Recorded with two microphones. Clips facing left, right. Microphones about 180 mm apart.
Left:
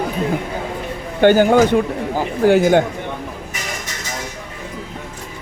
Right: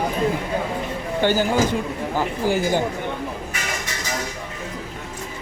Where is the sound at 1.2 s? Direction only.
55° left (ahead or behind).